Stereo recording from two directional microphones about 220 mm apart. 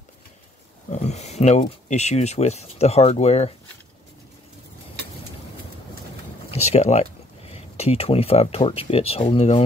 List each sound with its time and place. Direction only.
0.8 s speech: 30° left (ahead or behind)
6.5 s speech: 30° left (ahead or behind)